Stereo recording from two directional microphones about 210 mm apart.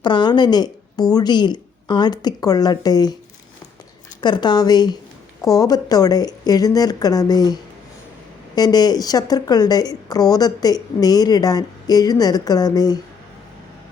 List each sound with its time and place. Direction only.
0.0 s speech: 20° left (ahead or behind)
4.2 s a woman's voice: 20° left (ahead or behind)